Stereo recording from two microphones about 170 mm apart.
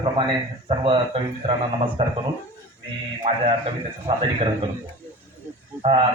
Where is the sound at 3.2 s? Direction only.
35° right (ahead or behind).